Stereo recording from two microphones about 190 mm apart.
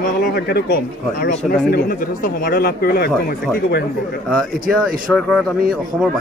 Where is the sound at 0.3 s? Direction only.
60° left (ahead or behind).